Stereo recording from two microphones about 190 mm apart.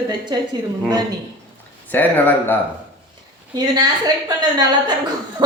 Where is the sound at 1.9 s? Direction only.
10° left (ahead or behind).